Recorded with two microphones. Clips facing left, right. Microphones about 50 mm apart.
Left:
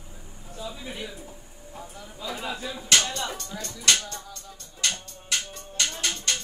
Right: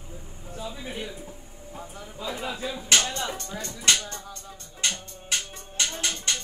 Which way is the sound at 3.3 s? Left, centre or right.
Right.